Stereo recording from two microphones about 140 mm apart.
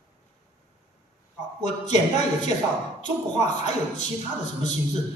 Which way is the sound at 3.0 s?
55° left (ahead or behind).